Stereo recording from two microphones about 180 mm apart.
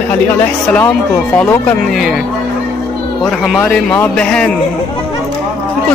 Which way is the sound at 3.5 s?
5° left (ahead or behind).